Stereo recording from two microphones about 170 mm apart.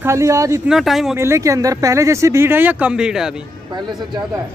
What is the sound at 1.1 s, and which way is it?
Speech, 15° right (ahead or behind).